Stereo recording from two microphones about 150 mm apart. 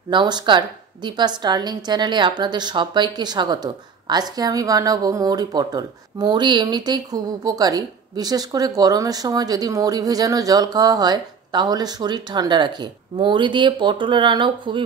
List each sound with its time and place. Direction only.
0.1 s a woman's voice: 30° right (ahead or behind)